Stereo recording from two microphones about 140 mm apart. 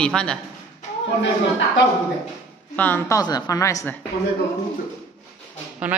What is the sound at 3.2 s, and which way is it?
Speech, 25° left (ahead or behind).